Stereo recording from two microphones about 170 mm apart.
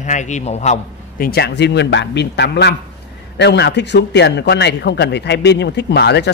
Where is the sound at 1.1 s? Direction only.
65° left (ahead or behind); by 6.3 s 80° left.